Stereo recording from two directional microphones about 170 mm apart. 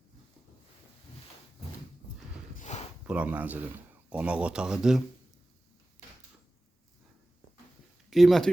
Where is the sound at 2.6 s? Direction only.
40° left (ahead or behind).